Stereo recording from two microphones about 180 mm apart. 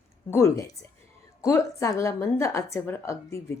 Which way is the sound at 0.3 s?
15° left (ahead or behind).